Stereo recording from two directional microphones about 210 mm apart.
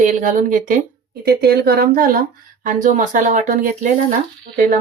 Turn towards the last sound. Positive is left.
turn(degrees=-40)  # may be behind; listen again after turning